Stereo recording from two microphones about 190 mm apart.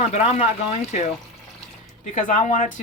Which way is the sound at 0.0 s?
35° left (ahead or behind).